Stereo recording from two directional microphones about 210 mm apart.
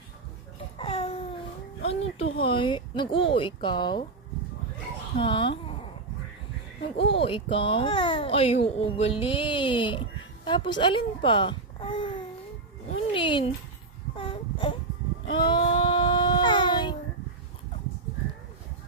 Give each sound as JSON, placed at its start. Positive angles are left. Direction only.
{"t": 0.8, "sound": "babbling", "side_deg": 25}
{"t": 2.4, "sound": "speech", "side_deg": 25}
{"t": 5.1, "sound": "a sound", "side_deg": 25}
{"t": 6.9, "sound": "a child's voice", "side_deg": 25}
{"t": 12.9, "sound": "a sound", "side_deg": 25}
{"t": 14.2, "sound": "wail", "side_deg": 25}
{"t": 15.3, "sound": "babbling", "side_deg": 20}